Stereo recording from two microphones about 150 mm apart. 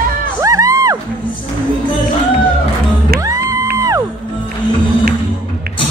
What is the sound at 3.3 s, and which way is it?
Music, 20° right (ahead or behind).